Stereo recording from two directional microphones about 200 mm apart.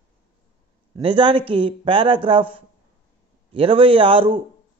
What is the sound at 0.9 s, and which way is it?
A man's voice, 25° right (ahead or behind).